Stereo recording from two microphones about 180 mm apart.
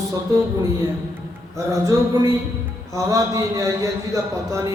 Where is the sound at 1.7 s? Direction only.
15° right (ahead or behind).